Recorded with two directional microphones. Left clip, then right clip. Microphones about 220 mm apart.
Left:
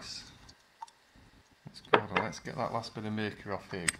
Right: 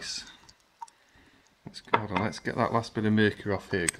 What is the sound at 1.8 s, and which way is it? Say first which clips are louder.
Speech: even; 10° right (ahead or behind).